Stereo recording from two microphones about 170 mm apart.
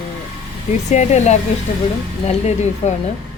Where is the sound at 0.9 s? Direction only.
40° left (ahead or behind).